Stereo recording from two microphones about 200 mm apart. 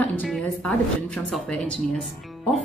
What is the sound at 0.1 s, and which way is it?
A woman's voice, 5° left (ahead or behind).